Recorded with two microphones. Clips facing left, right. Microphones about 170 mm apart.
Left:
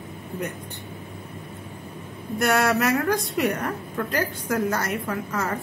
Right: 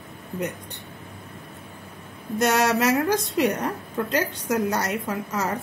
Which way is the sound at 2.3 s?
20° right (ahead or behind).